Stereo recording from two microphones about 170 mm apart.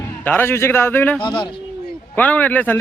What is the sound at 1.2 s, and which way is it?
Speech, 25° left (ahead or behind).